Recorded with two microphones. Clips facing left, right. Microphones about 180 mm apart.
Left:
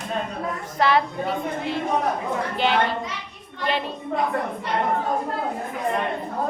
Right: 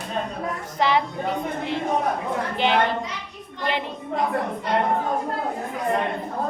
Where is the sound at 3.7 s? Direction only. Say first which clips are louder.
Left 1 dB; 15° right (ahead or behind).